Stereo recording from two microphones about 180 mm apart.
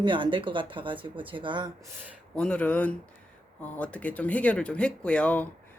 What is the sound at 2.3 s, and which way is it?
Speech, 5° left (ahead or behind).